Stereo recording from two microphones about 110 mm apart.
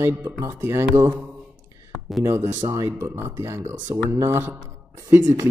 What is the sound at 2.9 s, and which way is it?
Speech, 25° right (ahead or behind).